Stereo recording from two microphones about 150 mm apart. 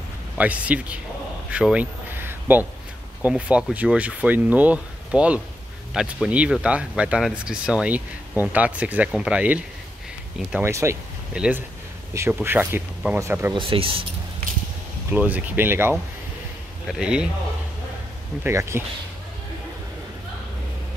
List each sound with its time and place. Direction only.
0.4 s speech: 10° right (ahead or behind)
1.5 s a sound: 5° right (ahead or behind)
3.2 s speech: 10° right (ahead or behind)
11.3 s speech: 5° right (ahead or behind)
13.5 s speech: 35° right (ahead or behind)
15.0 s speech: 10° right (ahead or behind)
18.4 s speech: 20° right (ahead or behind)